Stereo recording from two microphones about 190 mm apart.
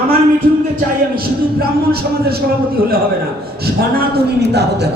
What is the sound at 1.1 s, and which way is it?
A man's voice, 55° right (ahead or behind).